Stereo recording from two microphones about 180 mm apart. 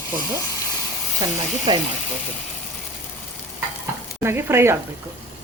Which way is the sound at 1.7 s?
25° right (ahead or behind).